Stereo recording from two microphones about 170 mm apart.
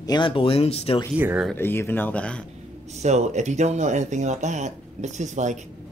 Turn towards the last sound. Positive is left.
turn(degrees=-45)  # may be behind; listen again after turning